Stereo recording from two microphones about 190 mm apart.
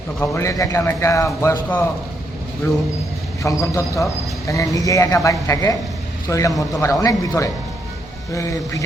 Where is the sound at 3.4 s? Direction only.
15° left (ahead or behind).